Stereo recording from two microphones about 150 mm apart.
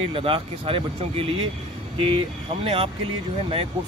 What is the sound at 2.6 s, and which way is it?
Speech, 40° right (ahead or behind).